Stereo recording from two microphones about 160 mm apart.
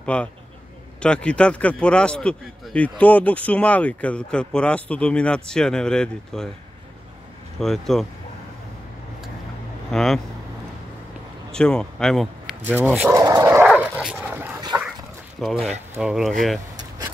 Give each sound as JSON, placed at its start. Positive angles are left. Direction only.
{"t": 0.0, "sound": "a man's voice", "side_deg": 5}
{"t": 7.5, "sound": "speech", "side_deg": 0}
{"t": 9.8, "sound": "speech", "side_deg": 0}
{"t": 11.5, "sound": "speech", "side_deg": 5}
{"t": 12.7, "sound": "speech", "side_deg": -10}
{"t": 13.1, "sound": "dog", "side_deg": -20}
{"t": 13.7, "sound": "dog", "side_deg": -5}
{"t": 15.4, "sound": "speech", "side_deg": 0}